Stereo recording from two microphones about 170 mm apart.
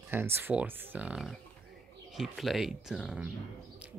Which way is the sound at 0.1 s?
10° right (ahead or behind).